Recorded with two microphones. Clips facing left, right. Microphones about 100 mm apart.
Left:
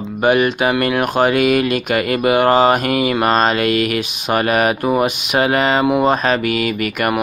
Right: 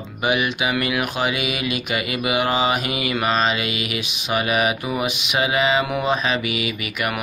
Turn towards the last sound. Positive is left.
turn(degrees=50)  # may be behind; listen again after turning